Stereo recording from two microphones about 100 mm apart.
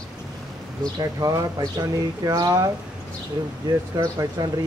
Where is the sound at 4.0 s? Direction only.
40° right (ahead or behind).